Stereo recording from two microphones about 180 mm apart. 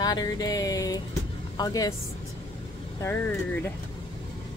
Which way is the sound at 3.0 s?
15° left (ahead or behind).